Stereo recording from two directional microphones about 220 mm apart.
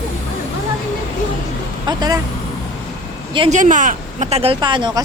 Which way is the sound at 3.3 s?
25° right (ahead or behind).